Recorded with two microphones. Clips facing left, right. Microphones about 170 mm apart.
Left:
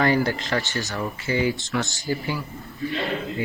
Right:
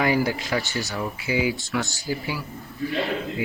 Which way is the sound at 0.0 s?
10° right (ahead or behind).